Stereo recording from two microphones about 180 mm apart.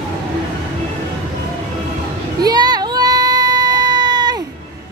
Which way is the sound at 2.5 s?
20° right (ahead or behind).